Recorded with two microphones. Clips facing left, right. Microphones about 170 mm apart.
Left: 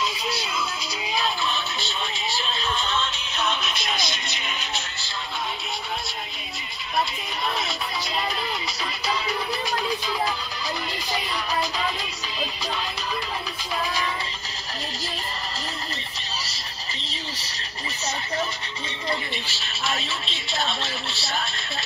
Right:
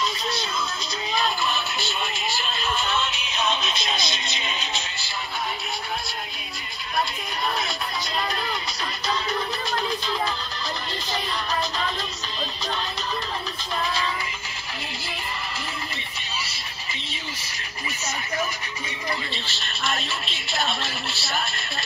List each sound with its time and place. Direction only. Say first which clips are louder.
0.0 s music: right 1 dB; 5° left (ahead or behind); by 5.1 s 15° right (ahead or behind)
19.3 s music: even; 10° left (ahead or behind)